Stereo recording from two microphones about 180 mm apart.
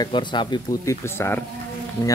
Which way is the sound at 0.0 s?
25° left (ahead or behind).